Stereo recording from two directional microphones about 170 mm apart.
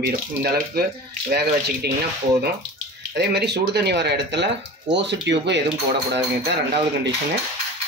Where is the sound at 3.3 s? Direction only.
75° right (ahead or behind); by 5.6 s 90° right.